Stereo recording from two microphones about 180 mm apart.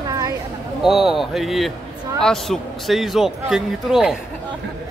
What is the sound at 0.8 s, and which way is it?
A man's voice, centre (ahead or behind).